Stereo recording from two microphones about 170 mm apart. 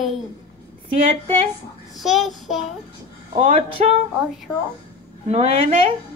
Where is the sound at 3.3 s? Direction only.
35° right (ahead or behind).